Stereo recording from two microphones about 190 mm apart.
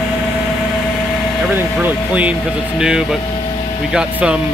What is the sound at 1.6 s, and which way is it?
Speech, 10° right (ahead or behind).